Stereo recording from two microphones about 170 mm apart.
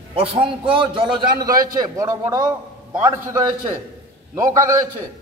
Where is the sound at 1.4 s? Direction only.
55° right (ahead or behind).